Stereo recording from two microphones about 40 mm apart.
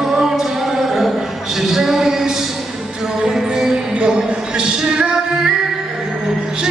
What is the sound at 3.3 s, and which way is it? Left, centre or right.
Music, centre.